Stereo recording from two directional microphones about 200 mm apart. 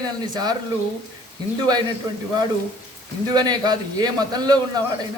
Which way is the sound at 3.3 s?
20° right (ahead or behind).